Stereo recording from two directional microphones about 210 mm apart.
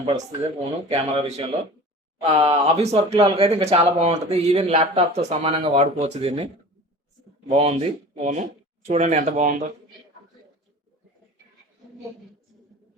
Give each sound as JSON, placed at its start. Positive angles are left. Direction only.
{"t": 0.0, "sound": "speech", "side_deg": -25}